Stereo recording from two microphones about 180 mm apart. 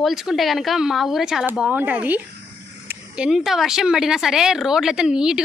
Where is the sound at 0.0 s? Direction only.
Centre (ahead or behind).